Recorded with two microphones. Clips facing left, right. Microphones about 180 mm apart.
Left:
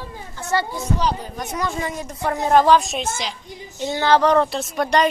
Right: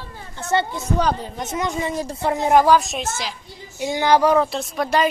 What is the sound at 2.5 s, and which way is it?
Speech, 10° right (ahead or behind).